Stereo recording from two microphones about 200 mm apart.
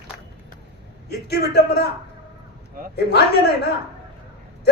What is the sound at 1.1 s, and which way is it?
Speech, 55° left (ahead or behind).